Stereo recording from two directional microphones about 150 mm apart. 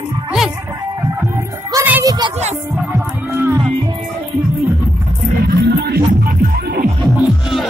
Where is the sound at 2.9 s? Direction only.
15° right (ahead or behind).